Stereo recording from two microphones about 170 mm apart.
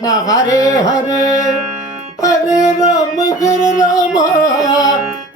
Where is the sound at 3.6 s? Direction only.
50° left (ahead or behind).